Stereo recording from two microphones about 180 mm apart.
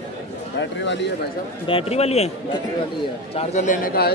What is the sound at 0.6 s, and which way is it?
Speech, 80° left.